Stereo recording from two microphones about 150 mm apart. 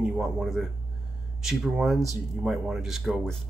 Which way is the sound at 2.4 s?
Centre (ahead or behind).